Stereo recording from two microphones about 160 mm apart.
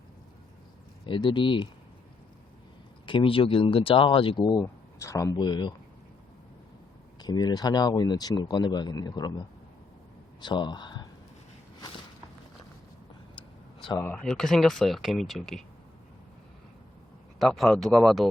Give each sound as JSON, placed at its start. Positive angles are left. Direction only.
{"t": 1.0, "sound": "speech", "side_deg": 30}
{"t": 3.1, "sound": "speech", "side_deg": 35}
{"t": 4.5, "sound": "speech", "side_deg": 20}
{"t": 7.2, "sound": "speech", "side_deg": 25}
{"t": 10.4, "sound": "speech", "side_deg": 30}
{"t": 14.0, "sound": "speech", "side_deg": 15}
{"t": 14.3, "sound": "speech", "side_deg": 5}
{"t": 17.4, "sound": "speech", "side_deg": 0}